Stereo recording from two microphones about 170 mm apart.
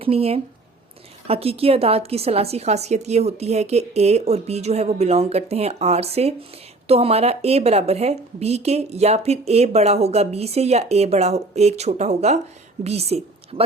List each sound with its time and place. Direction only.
0.0 s a woman's voice: 35° right (ahead or behind)